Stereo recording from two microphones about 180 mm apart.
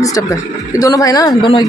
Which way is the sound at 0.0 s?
20° left (ahead or behind).